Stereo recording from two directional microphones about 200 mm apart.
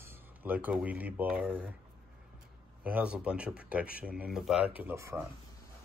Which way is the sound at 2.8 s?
5° right (ahead or behind).